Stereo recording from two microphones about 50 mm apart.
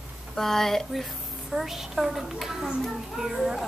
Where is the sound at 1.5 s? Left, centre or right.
Centre.